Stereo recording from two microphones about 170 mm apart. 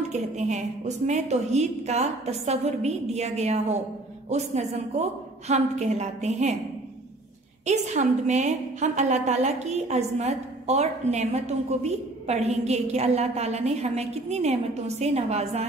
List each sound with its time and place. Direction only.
0.1 s a woman's voice: 45° right (ahead or behind)
7.6 s a woman's voice: 45° right (ahead or behind)